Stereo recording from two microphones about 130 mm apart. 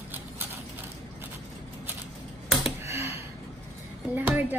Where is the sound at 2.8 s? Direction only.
20° right (ahead or behind).